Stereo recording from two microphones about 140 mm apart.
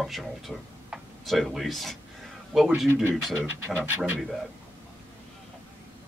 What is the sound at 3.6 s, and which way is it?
Speech, 15° right (ahead or behind).